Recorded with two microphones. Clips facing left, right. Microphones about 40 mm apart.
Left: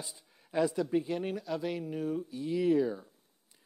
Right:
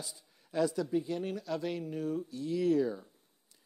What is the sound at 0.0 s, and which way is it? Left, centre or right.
Speech, left.